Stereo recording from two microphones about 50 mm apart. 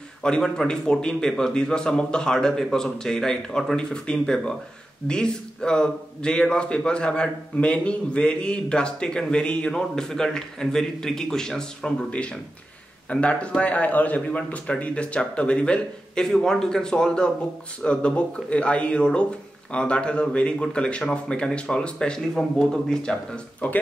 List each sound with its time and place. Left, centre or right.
0.2 s a man's voice: centre
12.1 s a man's voice: left